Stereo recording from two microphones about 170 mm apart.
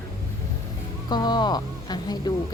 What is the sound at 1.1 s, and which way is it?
Speech, 25° left (ahead or behind).